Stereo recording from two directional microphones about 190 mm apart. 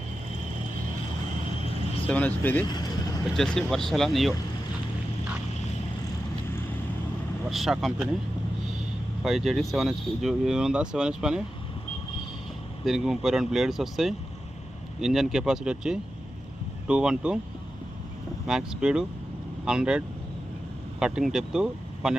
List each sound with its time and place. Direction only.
2.0 s speech: 10° left (ahead or behind)
2.6 s speech: 20° left (ahead or behind)
3.3 s speech: centre (ahead or behind)
7.5 s speech: centre (ahead or behind)
9.2 s speech: centre (ahead or behind)
12.8 s speech: centre (ahead or behind)
18.4 s speech: 5° right (ahead or behind)
21.0 s speech: 5° right (ahead or behind)